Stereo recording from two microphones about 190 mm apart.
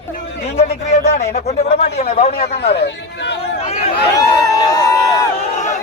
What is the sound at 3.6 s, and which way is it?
Speech, 30° left (ahead or behind).